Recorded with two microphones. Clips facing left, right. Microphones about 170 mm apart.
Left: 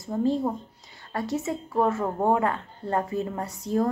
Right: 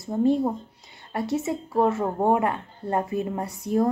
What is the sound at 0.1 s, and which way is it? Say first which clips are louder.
Speech: right 3 dB; 25° right (ahead or behind).